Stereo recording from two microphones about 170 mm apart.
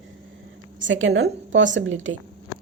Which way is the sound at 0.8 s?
90° right.